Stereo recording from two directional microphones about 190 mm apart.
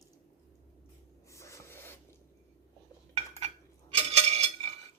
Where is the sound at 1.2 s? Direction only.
15° left (ahead or behind).